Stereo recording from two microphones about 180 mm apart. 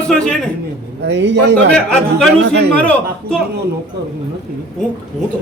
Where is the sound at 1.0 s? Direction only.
75° right (ahead or behind).